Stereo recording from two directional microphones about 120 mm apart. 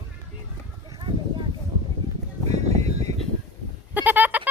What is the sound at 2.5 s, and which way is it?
Music, 65° right (ahead or behind).